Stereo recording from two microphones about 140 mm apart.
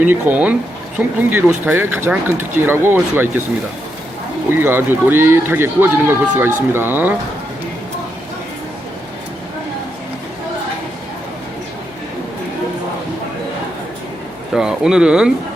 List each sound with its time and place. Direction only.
0.0 s speech: 10° right (ahead or behind)
4.4 s speech: 15° right (ahead or behind)
14.5 s speech: 5° right (ahead or behind)